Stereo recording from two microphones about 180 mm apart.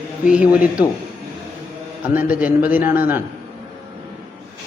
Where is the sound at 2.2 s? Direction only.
10° right (ahead or behind).